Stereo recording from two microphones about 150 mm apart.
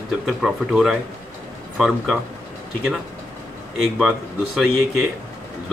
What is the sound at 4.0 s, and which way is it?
Speech, 5° right (ahead or behind).